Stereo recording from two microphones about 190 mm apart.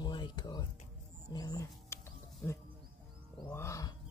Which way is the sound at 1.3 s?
20° left (ahead or behind).